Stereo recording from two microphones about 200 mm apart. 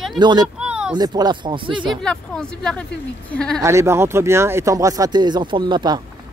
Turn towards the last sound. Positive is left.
turn(degrees=-20)  # may be behind; listen again after turning